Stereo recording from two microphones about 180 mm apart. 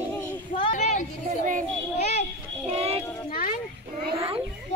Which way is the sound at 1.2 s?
45° right (ahead or behind).